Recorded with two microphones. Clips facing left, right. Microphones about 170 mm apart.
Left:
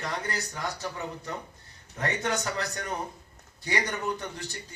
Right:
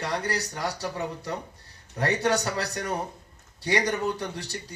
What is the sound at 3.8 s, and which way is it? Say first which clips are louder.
Speech: right 4 dB; 35° right (ahead or behind).